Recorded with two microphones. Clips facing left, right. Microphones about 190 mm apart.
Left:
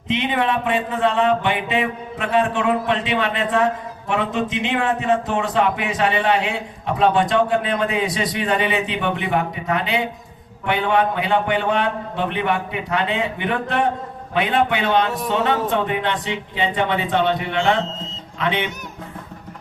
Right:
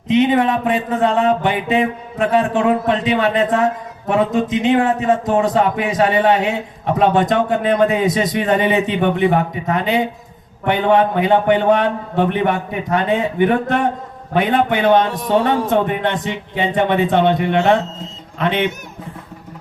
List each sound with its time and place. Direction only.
0.1 s mantra: 40° right (ahead or behind)
7.1 s a man's voice: 45° right (ahead or behind)